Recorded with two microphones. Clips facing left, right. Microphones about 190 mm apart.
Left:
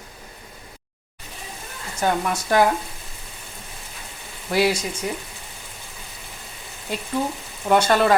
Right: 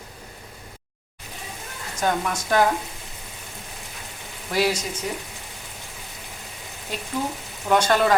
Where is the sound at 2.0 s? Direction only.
10° left (ahead or behind).